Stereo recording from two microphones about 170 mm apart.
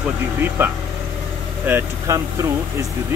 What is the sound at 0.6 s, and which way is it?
Speech, 15° right (ahead or behind).